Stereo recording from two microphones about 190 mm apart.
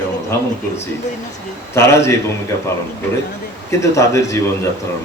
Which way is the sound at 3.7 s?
15° left (ahead or behind).